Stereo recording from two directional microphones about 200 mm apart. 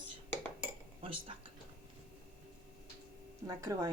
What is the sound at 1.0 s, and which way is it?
Speech, 25° right (ahead or behind).